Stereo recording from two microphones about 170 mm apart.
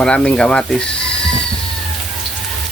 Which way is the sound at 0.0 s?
5° left (ahead or behind).